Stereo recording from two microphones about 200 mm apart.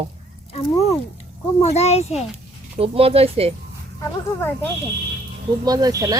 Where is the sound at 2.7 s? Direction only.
30° right (ahead or behind).